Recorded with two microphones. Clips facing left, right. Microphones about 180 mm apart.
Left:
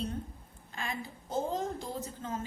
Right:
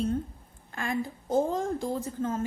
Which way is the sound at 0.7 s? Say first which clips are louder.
Right 8 dB; 50° right (ahead or behind).